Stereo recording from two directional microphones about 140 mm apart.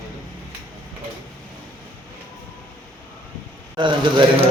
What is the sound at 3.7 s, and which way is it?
Speech, 35° right (ahead or behind).